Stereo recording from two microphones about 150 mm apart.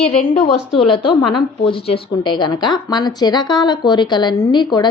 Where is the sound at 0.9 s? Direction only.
35° left (ahead or behind).